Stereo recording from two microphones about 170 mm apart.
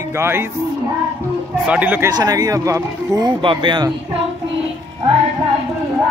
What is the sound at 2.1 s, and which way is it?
Speech, 20° right (ahead or behind).